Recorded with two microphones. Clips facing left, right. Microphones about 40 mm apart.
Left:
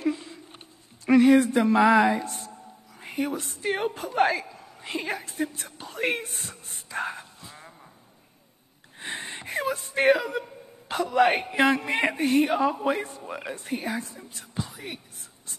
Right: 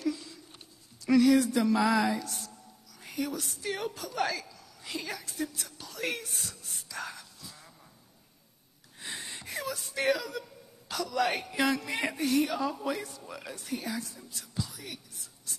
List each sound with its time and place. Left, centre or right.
0.0 s a sound: left
1.0 s a man's voice: left
9.0 s speech: left